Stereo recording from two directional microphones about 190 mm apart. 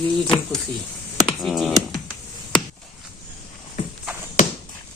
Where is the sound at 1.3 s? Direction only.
Centre (ahead or behind).